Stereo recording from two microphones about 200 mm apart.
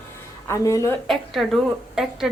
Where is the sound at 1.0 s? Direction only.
Centre (ahead or behind).